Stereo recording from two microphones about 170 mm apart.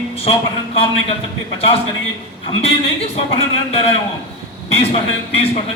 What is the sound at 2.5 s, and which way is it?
Speech, 25° left (ahead or behind).